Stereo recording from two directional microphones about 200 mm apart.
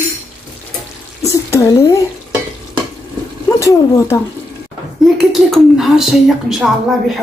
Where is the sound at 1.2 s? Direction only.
15° left (ahead or behind).